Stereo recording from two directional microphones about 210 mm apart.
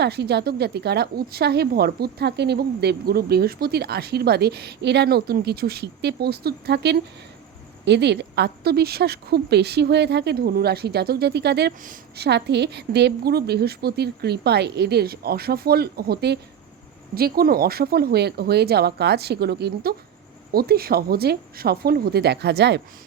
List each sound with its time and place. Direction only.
0.0 s a woman's voice: 50° right (ahead or behind)